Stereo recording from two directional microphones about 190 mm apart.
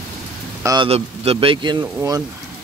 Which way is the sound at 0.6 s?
20° right (ahead or behind).